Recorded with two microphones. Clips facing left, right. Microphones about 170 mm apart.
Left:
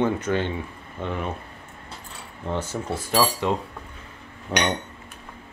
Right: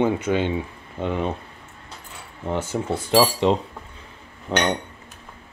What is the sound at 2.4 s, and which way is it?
Speech, 15° right (ahead or behind).